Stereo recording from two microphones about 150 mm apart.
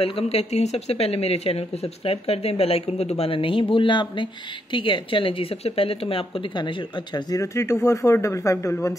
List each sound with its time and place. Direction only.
0.0 s speech: 40° left (ahead or behind)
7.2 s speech: 25° left (ahead or behind)